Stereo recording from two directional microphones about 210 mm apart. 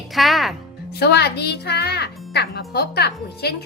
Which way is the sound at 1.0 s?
50° left (ahead or behind).